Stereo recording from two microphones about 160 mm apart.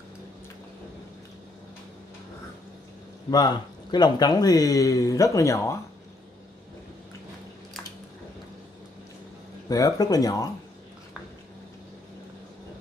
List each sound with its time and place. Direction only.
3.3 s speech: 25° left (ahead or behind)
9.7 s speech: 20° left (ahead or behind)